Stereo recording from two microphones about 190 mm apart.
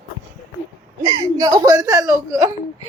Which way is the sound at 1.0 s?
20° right (ahead or behind).